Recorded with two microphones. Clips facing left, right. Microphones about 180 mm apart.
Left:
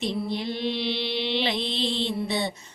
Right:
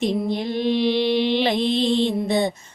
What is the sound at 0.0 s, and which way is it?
Mantra, 50° right (ahead or behind).